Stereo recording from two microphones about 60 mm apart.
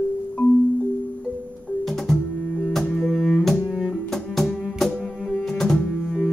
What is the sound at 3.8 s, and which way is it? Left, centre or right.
Music, centre.